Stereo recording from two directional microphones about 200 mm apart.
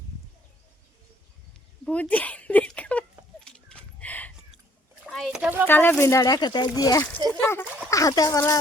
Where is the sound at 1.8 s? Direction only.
5° left (ahead or behind).